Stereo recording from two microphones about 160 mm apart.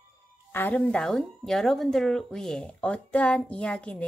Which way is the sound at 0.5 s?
10° left (ahead or behind).